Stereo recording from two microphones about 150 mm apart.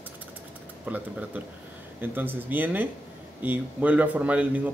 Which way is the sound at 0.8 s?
10° right (ahead or behind).